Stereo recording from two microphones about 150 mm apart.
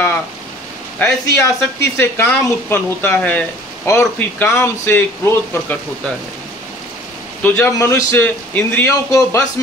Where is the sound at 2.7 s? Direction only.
15° left (ahead or behind).